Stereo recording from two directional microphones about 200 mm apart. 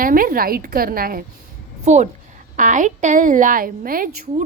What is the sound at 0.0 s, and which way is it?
A woman's voice, 45° right (ahead or behind).